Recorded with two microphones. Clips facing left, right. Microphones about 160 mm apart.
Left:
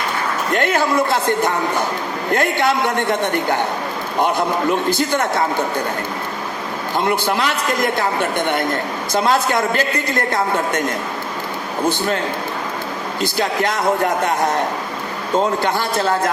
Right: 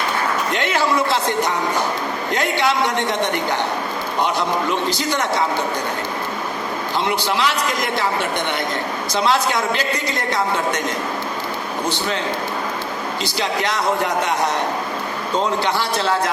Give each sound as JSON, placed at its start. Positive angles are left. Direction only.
{"t": 0.5, "sound": "a man's voice", "side_deg": 50}
{"t": 4.9, "sound": "a man's voice", "side_deg": 50}
{"t": 6.9, "sound": "a man's voice", "side_deg": 50}
{"t": 11.9, "sound": "a man's voice", "side_deg": 50}
{"t": 13.2, "sound": "a man's voice", "side_deg": 50}
{"t": 15.6, "sound": "a man's voice", "side_deg": 50}